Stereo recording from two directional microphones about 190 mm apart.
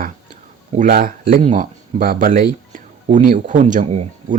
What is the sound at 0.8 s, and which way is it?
Speech, 50° right (ahead or behind).